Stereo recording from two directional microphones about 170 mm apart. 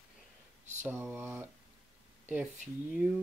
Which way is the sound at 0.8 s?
10° right (ahead or behind).